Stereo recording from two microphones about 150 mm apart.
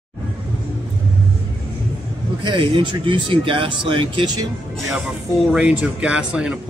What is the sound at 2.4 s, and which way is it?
Speech, 30° right (ahead or behind).